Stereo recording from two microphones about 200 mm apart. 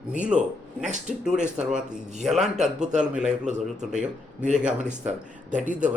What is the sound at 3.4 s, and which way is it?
Speech, 35° right (ahead or behind).